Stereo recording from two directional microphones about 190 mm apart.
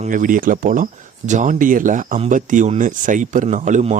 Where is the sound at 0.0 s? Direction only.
45° right (ahead or behind).